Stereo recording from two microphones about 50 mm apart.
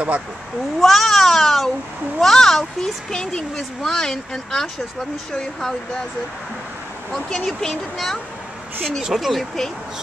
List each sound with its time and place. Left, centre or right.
0.7 s speech: centre
7.1 s speech: centre
7.4 s speech: centre
9.0 s speech: centre
9.3 s speech: centre